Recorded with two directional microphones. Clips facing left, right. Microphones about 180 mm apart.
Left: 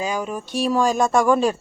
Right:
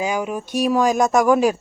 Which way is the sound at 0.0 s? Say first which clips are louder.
Right 2 dB; 10° right (ahead or behind).